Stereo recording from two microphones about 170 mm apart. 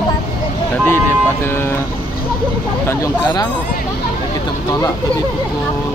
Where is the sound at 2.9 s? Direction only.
25° left (ahead or behind).